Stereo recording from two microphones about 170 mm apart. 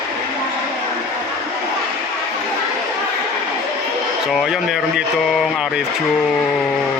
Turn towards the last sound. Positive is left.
turn(degrees=-5)  # may be behind; listen again after turning